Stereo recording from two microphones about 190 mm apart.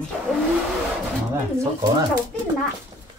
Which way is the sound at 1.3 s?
15° right (ahead or behind).